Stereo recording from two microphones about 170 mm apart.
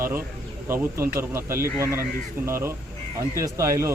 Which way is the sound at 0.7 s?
15° right (ahead or behind).